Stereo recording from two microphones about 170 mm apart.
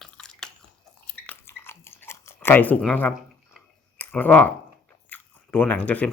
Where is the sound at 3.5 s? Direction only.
10° left (ahead or behind).